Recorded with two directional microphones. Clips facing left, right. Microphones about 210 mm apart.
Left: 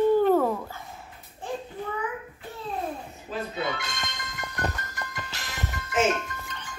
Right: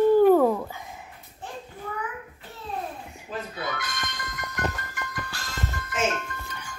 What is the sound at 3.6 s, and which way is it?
Music, 25° left (ahead or behind).